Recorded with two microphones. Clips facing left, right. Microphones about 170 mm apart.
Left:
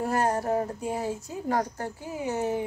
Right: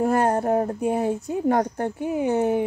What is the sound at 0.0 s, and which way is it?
A woman's voice, 55° right (ahead or behind).